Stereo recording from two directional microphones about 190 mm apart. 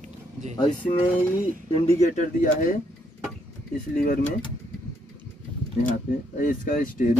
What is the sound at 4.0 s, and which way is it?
Speech, 50° left (ahead or behind).